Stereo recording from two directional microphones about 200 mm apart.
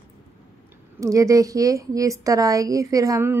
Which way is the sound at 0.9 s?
15° right (ahead or behind).